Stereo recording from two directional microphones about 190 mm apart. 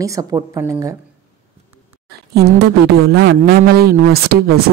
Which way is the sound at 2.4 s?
60° right (ahead or behind).